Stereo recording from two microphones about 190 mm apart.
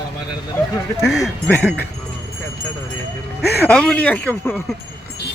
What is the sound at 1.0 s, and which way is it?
Speech, centre (ahead or behind).